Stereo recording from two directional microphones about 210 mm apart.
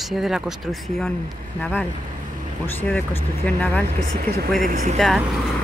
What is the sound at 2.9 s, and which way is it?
Speech, 10° left (ahead or behind).